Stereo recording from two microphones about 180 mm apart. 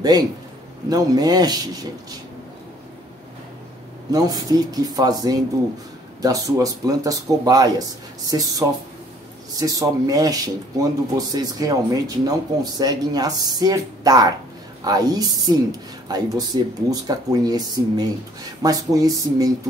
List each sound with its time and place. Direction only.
0.8 s speech: 20° right (ahead or behind)
4.1 s speech: 20° right (ahead or behind)